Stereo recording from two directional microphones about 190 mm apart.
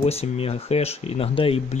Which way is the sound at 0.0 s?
30° left (ahead or behind).